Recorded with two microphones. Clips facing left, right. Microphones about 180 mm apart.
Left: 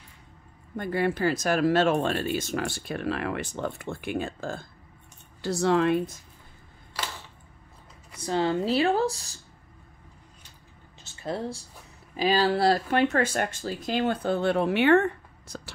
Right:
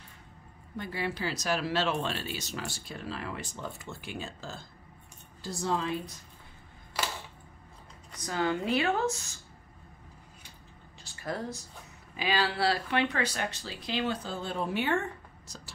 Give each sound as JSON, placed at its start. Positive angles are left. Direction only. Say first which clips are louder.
{"t": 0.7, "sound": "speech", "louder": "left 8 dB", "side_deg": 50}
{"t": 5.4, "sound": "speech", "louder": "left 9 dB", "side_deg": 75}
{"t": 8.2, "sound": "speech", "louder": "left 5 dB", "side_deg": 30}
{"t": 11.0, "sound": "a sound", "louder": "left 4 dB", "side_deg": 25}
{"t": 12.2, "sound": "speech", "louder": "left 6 dB", "side_deg": 40}